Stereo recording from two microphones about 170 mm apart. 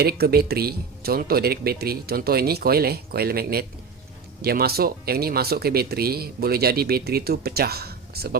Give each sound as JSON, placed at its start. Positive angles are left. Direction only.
{"t": 0.0, "sound": "speech", "side_deg": -65}